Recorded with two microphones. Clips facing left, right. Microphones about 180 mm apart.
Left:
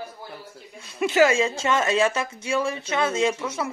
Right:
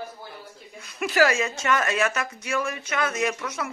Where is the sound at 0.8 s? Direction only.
25° left (ahead or behind).